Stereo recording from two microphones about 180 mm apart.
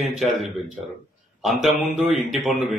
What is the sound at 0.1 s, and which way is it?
A man's voice, centre (ahead or behind).